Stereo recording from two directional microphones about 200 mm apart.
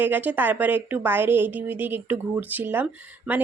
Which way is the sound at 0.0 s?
10° right (ahead or behind).